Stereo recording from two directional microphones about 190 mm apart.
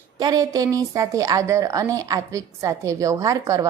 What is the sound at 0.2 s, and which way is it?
A woman's voice, 20° right (ahead or behind).